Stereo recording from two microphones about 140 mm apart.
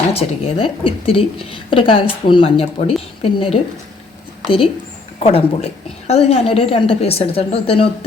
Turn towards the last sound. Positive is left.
turn(degrees=45)  # may be behind; listen again after turning